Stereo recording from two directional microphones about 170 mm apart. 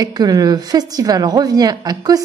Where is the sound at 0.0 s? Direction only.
20° right (ahead or behind).